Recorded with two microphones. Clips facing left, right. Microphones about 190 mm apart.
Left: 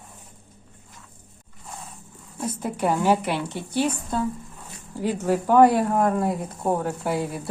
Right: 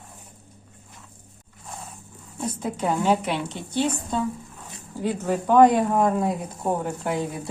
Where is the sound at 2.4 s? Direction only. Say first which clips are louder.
Left 1 dB; 10° left (ahead or behind).